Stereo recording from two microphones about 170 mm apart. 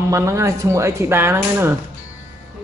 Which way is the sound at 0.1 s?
15° right (ahead or behind).